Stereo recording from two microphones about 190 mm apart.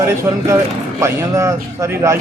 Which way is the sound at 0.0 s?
15° right (ahead or behind).